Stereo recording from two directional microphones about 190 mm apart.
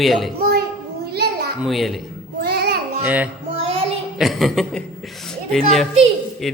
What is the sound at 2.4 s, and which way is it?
Child singing, 55° right (ahead or behind).